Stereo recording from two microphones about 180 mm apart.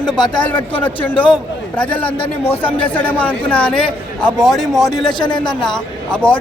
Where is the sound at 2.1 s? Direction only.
30° left (ahead or behind).